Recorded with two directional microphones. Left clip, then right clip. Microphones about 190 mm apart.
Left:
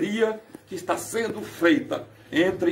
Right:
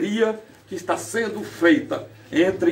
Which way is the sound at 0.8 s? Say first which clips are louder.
Right 2 dB; 15° left (ahead or behind).